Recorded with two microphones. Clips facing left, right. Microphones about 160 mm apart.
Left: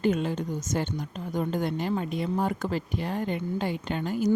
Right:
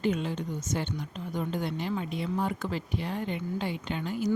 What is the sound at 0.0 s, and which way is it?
A woman's voice, 45° left (ahead or behind).